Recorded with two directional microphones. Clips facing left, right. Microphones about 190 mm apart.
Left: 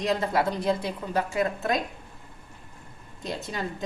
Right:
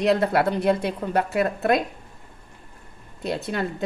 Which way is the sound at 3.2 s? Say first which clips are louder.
Right 6 dB; 65° right (ahead or behind).